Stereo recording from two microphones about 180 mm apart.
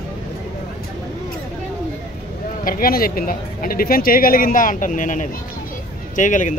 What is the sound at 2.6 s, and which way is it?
Speech, 55° left (ahead or behind).